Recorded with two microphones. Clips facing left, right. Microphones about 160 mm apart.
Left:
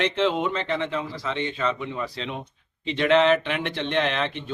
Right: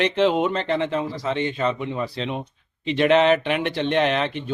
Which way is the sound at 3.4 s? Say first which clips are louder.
Right 5 dB; 45° right (ahead or behind).